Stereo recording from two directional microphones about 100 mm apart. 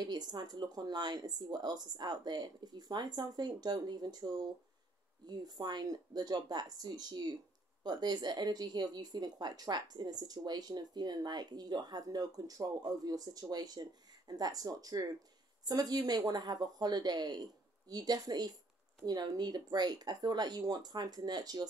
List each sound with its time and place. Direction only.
0.0 s a woman's voice: 45° right (ahead or behind)